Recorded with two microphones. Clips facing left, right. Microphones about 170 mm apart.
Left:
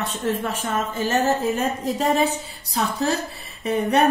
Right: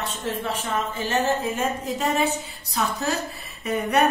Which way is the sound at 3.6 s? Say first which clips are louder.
Left 3 dB; 30° left (ahead or behind).